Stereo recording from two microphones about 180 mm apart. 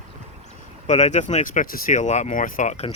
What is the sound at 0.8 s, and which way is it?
Speech, 40° left (ahead or behind).